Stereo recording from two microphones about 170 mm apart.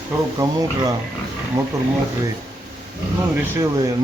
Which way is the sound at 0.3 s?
20° right (ahead or behind).